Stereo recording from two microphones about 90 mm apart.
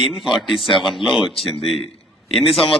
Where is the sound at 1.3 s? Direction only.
90° left.